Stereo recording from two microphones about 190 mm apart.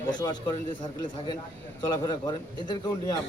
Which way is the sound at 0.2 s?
20° left (ahead or behind).